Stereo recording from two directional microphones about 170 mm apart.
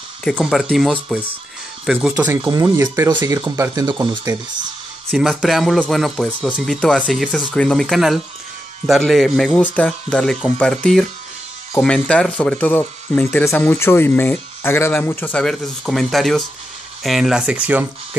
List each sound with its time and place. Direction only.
0.2 s speech: 5° left (ahead or behind)
2.5 s speech: 20° right (ahead or behind)
5.1 s speech: centre (ahead or behind)